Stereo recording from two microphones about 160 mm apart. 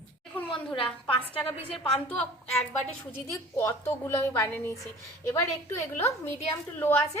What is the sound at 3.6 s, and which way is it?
A woman's voice, 15° left (ahead or behind).